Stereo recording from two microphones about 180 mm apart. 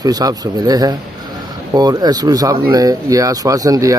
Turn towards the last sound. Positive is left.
turn(degrees=-20)  # may be behind; listen again after turning